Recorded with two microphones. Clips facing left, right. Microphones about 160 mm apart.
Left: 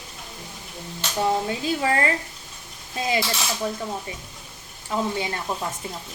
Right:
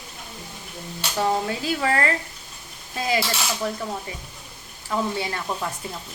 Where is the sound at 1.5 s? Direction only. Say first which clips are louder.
Even; 25° left (ahead or behind).